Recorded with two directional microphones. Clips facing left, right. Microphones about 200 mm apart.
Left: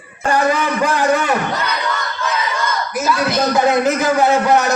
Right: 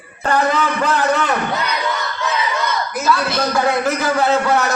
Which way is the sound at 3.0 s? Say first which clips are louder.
Left 2 dB; 15° left (ahead or behind).